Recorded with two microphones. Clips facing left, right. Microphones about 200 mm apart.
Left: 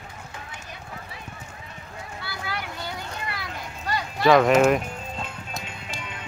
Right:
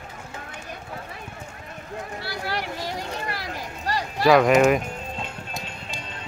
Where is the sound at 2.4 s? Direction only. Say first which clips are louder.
Right 3 dB; 35° right (ahead or behind).